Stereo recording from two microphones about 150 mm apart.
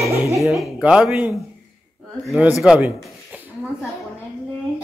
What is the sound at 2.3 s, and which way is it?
Speech, 10° right (ahead or behind).